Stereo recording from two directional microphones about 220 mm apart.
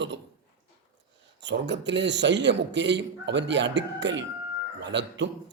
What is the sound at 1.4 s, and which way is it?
A man's voice, 55° right (ahead or behind).